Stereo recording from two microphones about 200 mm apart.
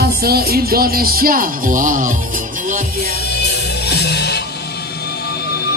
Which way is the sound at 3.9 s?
55° left (ahead or behind).